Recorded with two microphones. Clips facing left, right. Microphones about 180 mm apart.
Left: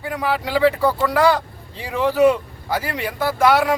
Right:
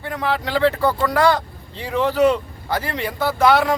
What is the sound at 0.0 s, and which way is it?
Speech, 10° left (ahead or behind).